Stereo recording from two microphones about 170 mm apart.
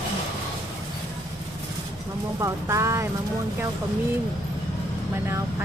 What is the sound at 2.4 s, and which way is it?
Speech, 15° right (ahead or behind).